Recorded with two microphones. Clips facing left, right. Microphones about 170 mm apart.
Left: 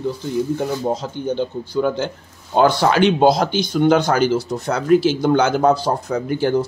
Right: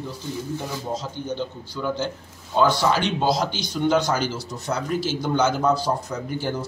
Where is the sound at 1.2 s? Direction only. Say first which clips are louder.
Left 7 dB; 60° left (ahead or behind).